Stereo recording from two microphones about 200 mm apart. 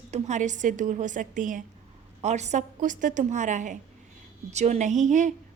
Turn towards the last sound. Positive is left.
turn(degrees=-40)  # may be behind; listen again after turning